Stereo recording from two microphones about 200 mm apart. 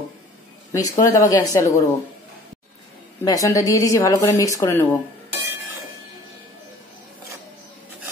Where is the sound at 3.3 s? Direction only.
15° left (ahead or behind).